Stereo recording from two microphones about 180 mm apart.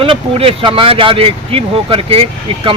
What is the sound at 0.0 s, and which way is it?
Speech, 30° right (ahead or behind).